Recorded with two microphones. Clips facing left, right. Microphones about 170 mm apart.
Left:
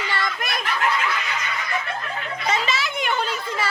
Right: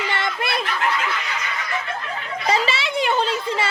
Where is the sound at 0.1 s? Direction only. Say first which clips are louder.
Right 3 dB; 25° right (ahead or behind).